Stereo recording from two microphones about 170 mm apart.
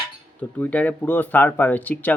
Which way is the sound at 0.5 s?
10° left (ahead or behind).